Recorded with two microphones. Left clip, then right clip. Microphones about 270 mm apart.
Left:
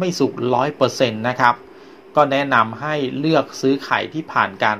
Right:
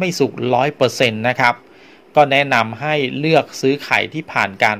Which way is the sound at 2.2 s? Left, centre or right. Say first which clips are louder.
Right 2 dB; right.